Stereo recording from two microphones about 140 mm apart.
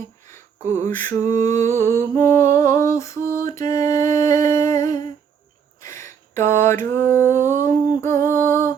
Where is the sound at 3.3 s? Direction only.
80° right.